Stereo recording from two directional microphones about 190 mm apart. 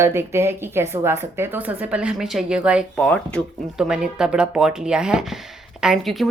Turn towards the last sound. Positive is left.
turn(degrees=0)  # may be behind; listen again after turning